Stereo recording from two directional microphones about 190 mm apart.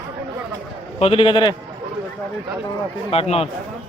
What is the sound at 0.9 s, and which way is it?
Speech, 30° left (ahead or behind).